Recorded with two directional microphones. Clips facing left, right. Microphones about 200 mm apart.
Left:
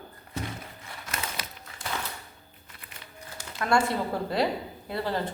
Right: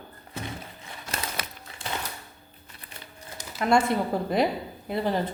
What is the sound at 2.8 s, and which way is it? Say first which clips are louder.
Crumpling: right 3 dB; 35° right (ahead or behind).